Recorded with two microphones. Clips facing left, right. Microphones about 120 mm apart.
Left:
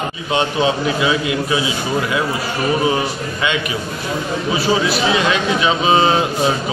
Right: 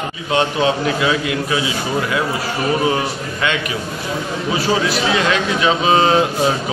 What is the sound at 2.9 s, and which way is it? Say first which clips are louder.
A man's voice: left 1 dB; 10° left (ahead or behind).